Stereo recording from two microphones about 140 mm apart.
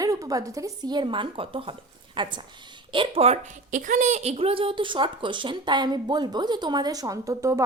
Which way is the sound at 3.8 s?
65° right (ahead or behind).